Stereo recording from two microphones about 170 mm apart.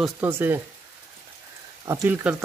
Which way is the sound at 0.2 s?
10° right (ahead or behind).